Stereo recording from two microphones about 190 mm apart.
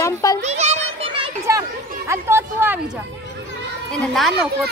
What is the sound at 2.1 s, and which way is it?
Speech, 15° right (ahead or behind).